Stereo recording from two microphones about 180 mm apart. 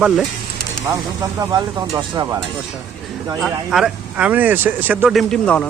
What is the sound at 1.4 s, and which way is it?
Speech, 20° right (ahead or behind).